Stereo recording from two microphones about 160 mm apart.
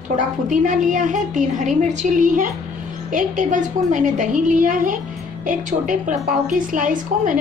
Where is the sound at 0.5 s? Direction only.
55° right (ahead or behind).